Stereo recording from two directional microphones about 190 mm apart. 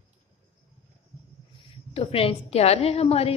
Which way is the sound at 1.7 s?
30° left (ahead or behind).